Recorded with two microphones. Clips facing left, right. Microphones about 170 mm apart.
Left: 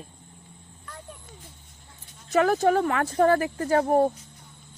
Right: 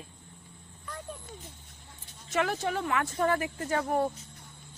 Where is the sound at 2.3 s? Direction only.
40° left (ahead or behind).